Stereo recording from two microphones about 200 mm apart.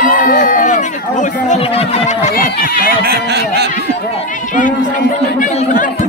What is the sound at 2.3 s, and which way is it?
Speech, 50° left (ahead or behind).